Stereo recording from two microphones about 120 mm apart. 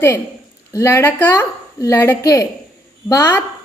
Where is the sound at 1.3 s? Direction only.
25° left (ahead or behind).